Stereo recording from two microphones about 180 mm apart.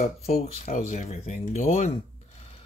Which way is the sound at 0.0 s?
40° left (ahead or behind).